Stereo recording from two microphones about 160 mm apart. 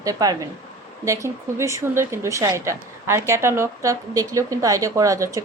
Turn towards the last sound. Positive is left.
turn(degrees=-20)  # may be behind; listen again after turning